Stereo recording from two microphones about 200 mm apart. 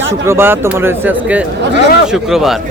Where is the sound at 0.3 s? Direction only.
10° right (ahead or behind).